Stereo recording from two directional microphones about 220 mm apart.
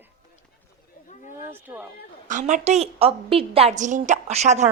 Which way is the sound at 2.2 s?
35° right (ahead or behind).